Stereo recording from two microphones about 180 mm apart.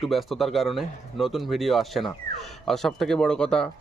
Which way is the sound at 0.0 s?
Centre (ahead or behind).